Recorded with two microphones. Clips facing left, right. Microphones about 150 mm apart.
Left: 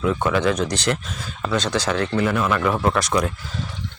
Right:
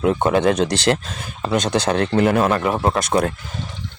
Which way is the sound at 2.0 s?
55° right (ahead or behind).